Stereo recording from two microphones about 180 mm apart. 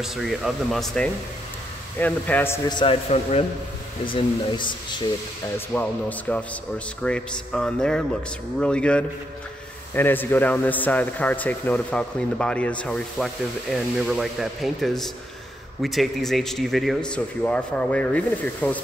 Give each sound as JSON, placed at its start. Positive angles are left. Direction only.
{"t": 0.0, "sound": "speech", "side_deg": 0}
{"t": 2.7, "sound": "a man's voice", "side_deg": 30}
{"t": 5.7, "sound": "speech", "side_deg": 10}